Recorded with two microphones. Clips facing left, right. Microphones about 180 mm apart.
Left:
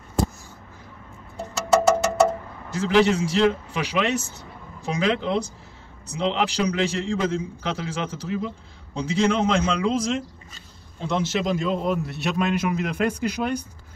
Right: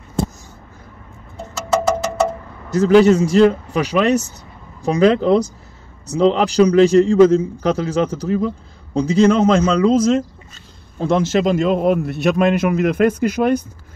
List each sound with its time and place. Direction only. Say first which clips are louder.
2.7 s a man's voice: right 8 dB; 40° right (ahead or behind)
11.5 s a man's voice: right 8 dB; 70° right (ahead or behind); by 13.6 s 50° right (ahead or behind)